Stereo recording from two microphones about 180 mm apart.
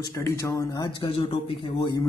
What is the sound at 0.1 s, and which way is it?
A man's voice, 15° left (ahead or behind).